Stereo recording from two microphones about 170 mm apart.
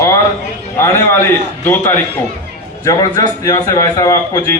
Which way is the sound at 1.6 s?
15° left (ahead or behind).